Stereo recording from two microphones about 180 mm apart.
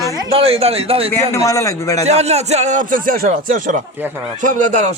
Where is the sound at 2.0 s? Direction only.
35° right (ahead or behind).